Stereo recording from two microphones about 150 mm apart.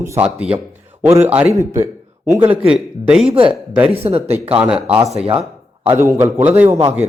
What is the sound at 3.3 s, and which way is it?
Speech, 35° right (ahead or behind).